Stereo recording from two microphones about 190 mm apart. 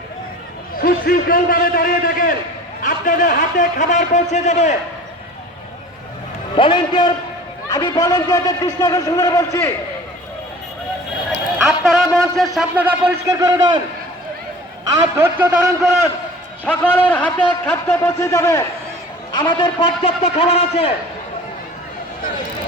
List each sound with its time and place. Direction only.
0.8 s a man's voice: 50° left (ahead or behind)
6.6 s a man's voice: 25° left (ahead or behind)
11.9 s speech: centre (ahead or behind)
12.5 s a man's voice: 10° right (ahead or behind)
14.8 s a man's voice: 10° right (ahead or behind)
16.6 s a man's voice: 5° left (ahead or behind); by 20.9 s 30° left (ahead or behind)